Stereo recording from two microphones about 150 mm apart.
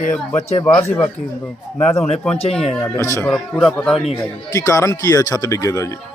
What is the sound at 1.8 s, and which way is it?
Speech, 45° left (ahead or behind).